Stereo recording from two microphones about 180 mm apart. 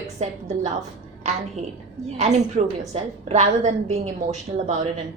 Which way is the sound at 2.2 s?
40° right (ahead or behind).